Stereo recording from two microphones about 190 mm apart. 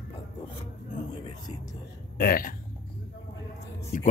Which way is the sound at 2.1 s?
50° left (ahead or behind).